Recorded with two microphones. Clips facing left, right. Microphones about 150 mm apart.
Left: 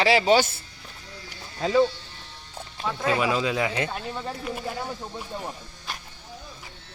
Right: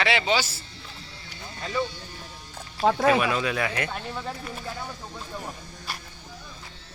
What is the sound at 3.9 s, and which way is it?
Speech, 5° left (ahead or behind).